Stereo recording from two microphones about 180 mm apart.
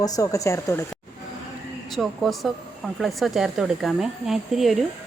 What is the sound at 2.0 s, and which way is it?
Speech, centre (ahead or behind).